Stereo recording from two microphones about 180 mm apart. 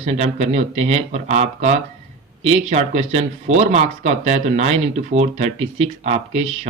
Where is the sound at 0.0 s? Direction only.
40° right (ahead or behind).